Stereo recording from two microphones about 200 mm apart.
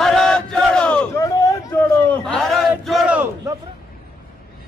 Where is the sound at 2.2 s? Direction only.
Centre (ahead or behind).